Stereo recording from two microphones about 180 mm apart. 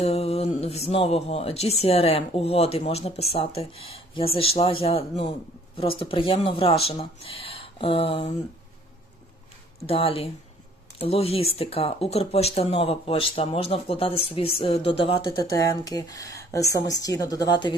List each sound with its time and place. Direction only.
0.0 s speech: 35° left (ahead or behind)
9.8 s speech: 30° left (ahead or behind)
15.4 s speech: 20° left (ahead or behind)